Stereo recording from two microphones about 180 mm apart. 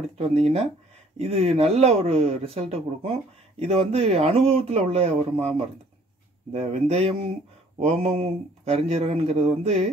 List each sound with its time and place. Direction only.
0.4 s speech: 35° right (ahead or behind)